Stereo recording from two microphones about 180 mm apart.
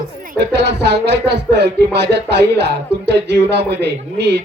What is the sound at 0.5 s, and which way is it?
Speech, 70° right (ahead or behind).